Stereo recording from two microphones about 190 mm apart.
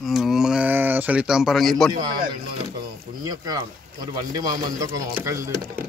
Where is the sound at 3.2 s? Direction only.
20° right (ahead or behind).